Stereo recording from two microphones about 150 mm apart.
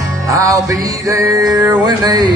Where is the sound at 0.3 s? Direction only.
20° right (ahead or behind).